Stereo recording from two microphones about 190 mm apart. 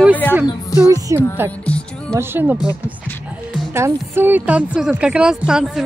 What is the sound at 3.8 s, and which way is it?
A woman's voice, 15° right (ahead or behind).